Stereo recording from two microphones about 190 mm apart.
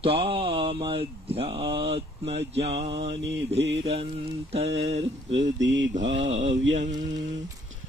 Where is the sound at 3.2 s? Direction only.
70° right (ahead or behind).